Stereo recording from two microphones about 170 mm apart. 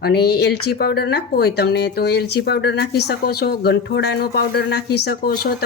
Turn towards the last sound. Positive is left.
turn(degrees=65)  # may be behind; listen again after turning